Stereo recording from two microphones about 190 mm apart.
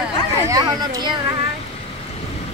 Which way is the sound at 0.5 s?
20° right (ahead or behind).